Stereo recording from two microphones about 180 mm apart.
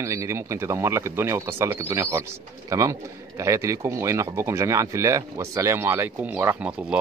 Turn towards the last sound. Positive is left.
turn(degrees=-5)  # may be behind; listen again after turning